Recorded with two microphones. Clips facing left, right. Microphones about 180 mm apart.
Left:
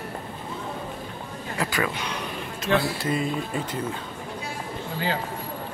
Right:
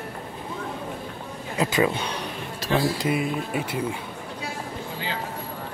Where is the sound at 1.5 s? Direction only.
20° right (ahead or behind).